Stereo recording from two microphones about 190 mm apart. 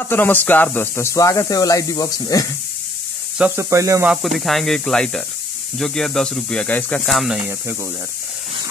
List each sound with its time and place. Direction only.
0.0 s speech: 10° left (ahead or behind)
3.3 s speech: 10° right (ahead or behind)
4.1 s speech: centre (ahead or behind)